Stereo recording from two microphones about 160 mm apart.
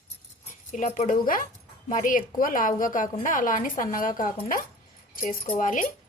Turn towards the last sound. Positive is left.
turn(degrees=55)  # may be behind; listen again after turning